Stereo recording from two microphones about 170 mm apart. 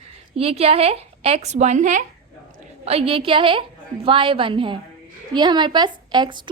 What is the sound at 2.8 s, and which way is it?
A woman's voice, 35° right (ahead or behind).